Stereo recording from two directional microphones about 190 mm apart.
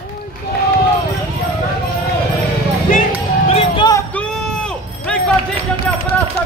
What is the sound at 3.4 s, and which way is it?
Music, 30° left (ahead or behind).